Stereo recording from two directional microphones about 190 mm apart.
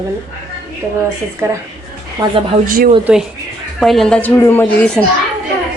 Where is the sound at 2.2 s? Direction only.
25° right (ahead or behind).